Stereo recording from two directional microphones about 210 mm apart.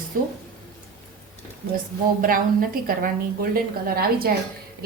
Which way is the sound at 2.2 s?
45° right (ahead or behind).